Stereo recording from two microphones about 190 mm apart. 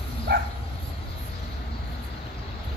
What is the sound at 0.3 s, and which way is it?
Dog, 55° right (ahead or behind).